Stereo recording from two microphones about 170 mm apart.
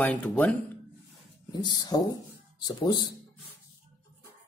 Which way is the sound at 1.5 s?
25° left (ahead or behind).